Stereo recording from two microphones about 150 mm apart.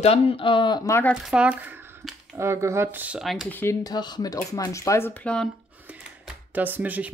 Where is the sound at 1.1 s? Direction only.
5° right (ahead or behind).